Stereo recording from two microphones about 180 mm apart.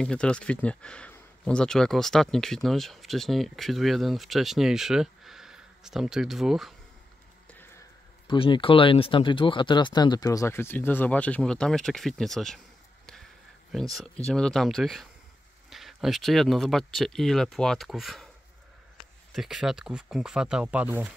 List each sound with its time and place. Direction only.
0.0 s speech: 5° left (ahead or behind)
8.3 s speech: 30° left (ahead or behind); by 12.5 s centre (ahead or behind)
13.9 s speech: 5° left (ahead or behind)
19.3 s speech: centre (ahead or behind)